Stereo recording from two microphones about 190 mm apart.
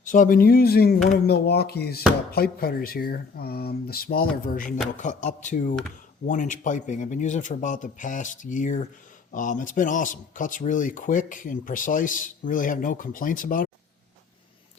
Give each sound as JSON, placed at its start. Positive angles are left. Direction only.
{"t": 0.1, "sound": "a man's voice", "side_deg": 45}